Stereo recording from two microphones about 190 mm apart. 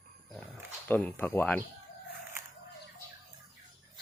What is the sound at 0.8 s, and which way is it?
Speech, 10° left (ahead or behind).